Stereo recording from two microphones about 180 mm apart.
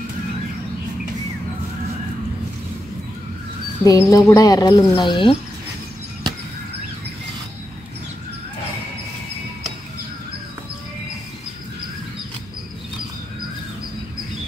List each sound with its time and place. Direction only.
3.8 s speech: 20° left (ahead or behind)